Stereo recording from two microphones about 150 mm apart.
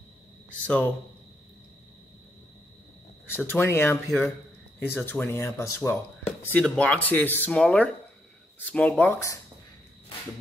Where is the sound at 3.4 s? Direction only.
15° left (ahead or behind).